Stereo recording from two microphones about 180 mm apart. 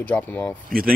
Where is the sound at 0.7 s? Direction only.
50° right (ahead or behind).